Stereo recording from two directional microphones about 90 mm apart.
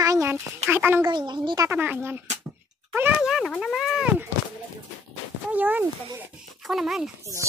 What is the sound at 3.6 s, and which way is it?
Speech, 5° right (ahead or behind).